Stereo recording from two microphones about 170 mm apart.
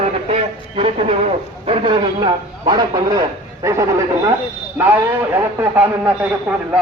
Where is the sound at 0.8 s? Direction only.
35° right (ahead or behind).